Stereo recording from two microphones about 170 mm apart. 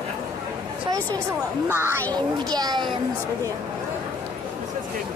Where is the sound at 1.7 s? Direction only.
15° right (ahead or behind).